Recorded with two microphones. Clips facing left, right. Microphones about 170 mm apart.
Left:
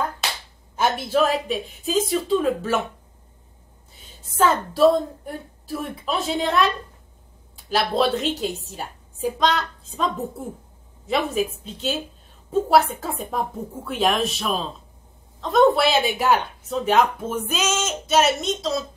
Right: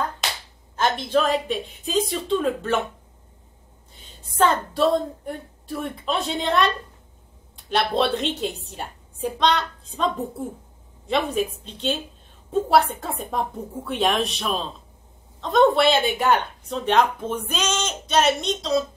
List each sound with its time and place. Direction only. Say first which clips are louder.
0.7 s speech: left 1 dB; 10° left (ahead or behind)
4.4 s speech: left 2 dB; 5° left (ahead or behind)